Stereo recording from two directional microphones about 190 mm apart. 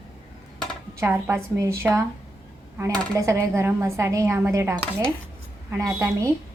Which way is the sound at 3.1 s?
15° right (ahead or behind).